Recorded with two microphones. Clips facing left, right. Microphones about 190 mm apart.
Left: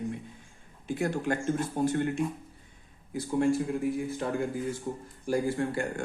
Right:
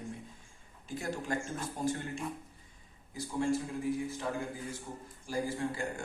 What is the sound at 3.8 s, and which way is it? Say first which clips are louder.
Speech: left 4 dB; 60° left (ahead or behind).